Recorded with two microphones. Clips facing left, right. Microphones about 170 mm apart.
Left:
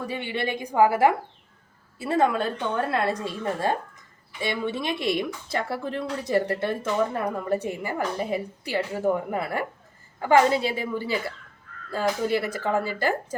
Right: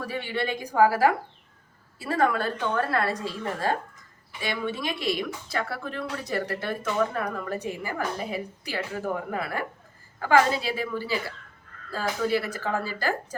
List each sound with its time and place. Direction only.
0.0 s speech: 20° left (ahead or behind)